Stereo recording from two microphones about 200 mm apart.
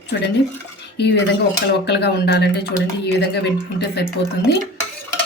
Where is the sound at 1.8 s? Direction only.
55° left (ahead or behind).